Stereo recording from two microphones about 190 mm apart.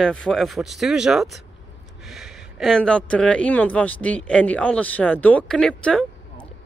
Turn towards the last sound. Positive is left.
turn(degrees=5)  # may be behind; listen again after turning